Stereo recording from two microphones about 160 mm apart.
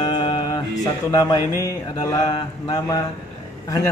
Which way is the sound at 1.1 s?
25° left (ahead or behind).